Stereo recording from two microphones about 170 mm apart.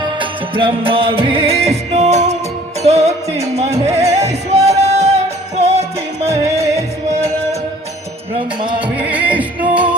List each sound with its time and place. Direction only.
0.2 s music: 30° right (ahead or behind)
9.0 s music: 10° right (ahead or behind)